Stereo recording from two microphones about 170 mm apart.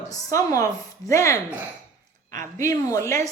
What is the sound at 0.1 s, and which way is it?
Speech, 20° left (ahead or behind).